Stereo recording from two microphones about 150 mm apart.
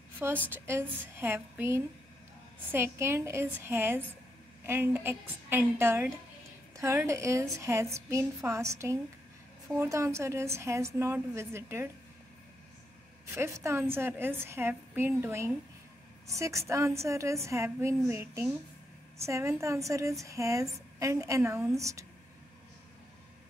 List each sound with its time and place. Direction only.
0.5 s a woman's voice: 15° right (ahead or behind)
13.3 s a woman's voice: 20° right (ahead or behind)